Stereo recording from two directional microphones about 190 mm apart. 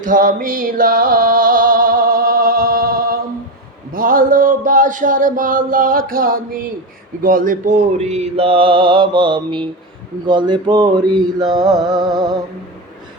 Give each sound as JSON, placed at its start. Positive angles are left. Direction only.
{"t": 0.0, "sound": "music", "side_deg": -45}
{"t": 3.9, "sound": "mantra", "side_deg": -45}